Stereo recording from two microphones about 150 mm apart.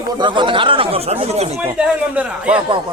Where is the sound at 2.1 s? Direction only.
10° right (ahead or behind).